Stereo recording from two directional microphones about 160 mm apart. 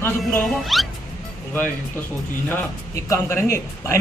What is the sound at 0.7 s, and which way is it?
Speech, centre (ahead or behind).